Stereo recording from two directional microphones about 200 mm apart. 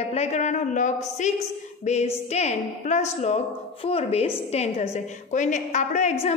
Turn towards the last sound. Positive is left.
turn(degrees=35)  # may be behind; listen again after turning